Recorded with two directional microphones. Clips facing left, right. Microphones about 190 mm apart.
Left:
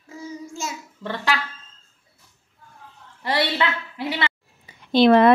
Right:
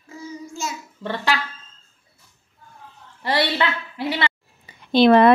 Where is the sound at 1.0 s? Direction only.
30° right (ahead or behind).